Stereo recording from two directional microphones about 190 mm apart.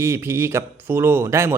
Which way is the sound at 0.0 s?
15° right (ahead or behind).